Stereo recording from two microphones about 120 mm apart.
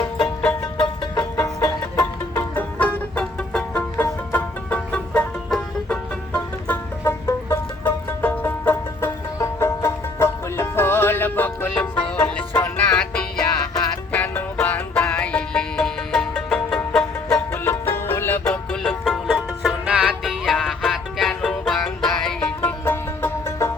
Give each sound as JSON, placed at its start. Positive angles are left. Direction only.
{"t": 0.6, "sound": "music", "side_deg": 35}
{"t": 1.4, "sound": "music", "side_deg": 20}
{"t": 7.0, "sound": "music", "side_deg": 20}
{"t": 18.7, "sound": "music", "side_deg": 5}
{"t": 19.4, "sound": "music", "side_deg": -10}
{"t": 22.6, "sound": "music", "side_deg": 20}